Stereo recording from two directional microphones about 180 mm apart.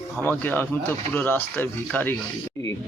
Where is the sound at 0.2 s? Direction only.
10° left (ahead or behind).